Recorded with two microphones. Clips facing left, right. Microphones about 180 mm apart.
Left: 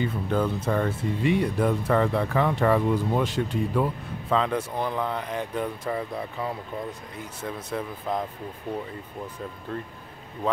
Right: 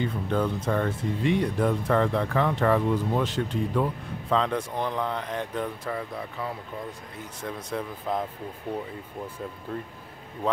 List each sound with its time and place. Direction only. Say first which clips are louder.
0.0 s speech: left 1 dB; 5° left (ahead or behind)
5.9 s speech: left 3 dB; 20° left (ahead or behind)
7.4 s speech: left 1 dB; 5° left (ahead or behind)
9.7 s speech: left 1 dB; 5° right (ahead or behind)